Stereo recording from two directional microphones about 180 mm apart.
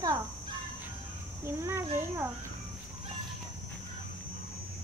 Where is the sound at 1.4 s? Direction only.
15° right (ahead or behind).